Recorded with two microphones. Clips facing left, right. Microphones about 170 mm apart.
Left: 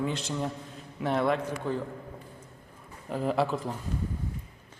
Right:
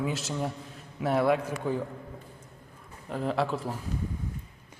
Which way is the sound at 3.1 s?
Centre (ahead or behind).